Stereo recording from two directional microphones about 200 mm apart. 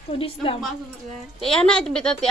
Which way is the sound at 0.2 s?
25° left (ahead or behind).